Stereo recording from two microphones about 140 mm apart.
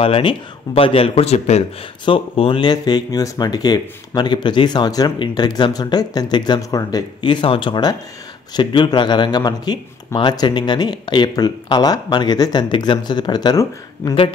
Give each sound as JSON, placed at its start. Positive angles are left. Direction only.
{"t": 0.0, "sound": "speech", "side_deg": 40}